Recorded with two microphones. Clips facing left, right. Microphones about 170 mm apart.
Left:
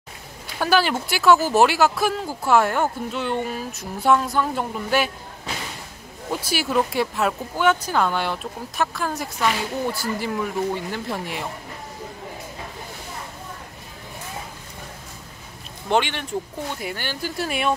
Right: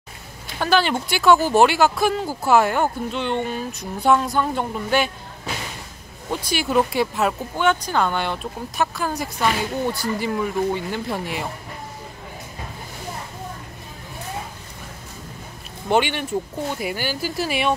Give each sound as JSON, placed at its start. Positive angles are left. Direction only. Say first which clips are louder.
{"t": 0.6, "sound": "speech", "louder": "right 1 dB", "side_deg": 5}
{"t": 6.4, "sound": "speech", "louder": "right 2 dB", "side_deg": 5}
{"t": 15.9, "sound": "speech", "louder": "right 2 dB", "side_deg": -5}